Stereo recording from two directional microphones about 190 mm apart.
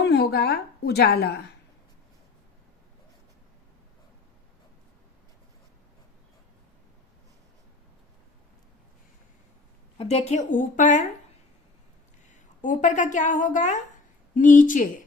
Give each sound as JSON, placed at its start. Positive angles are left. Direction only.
{"t": 0.0, "sound": "a woman's voice", "side_deg": 60}
{"t": 10.0, "sound": "a woman's voice", "side_deg": 35}
{"t": 12.6, "sound": "a woman's voice", "side_deg": 40}